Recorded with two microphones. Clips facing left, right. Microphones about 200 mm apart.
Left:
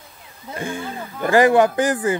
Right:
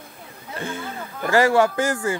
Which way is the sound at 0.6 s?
15° left (ahead or behind).